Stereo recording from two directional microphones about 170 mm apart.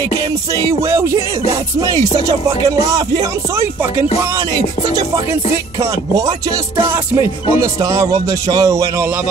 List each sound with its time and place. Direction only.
0.7 s music: 15° right (ahead or behind)
4.8 s music: 20° right (ahead or behind)
6.8 s music: 15° right (ahead or behind)